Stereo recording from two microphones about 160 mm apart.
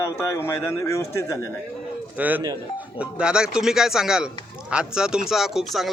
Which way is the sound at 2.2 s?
10° right (ahead or behind).